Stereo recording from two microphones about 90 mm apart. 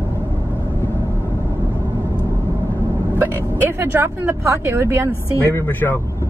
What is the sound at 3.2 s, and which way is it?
Speech, 25° right (ahead or behind).